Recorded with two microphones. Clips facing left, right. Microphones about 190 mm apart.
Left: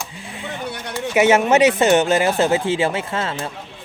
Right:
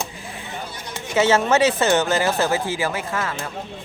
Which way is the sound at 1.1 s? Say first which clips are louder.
Left 3 dB; 20° left (ahead or behind).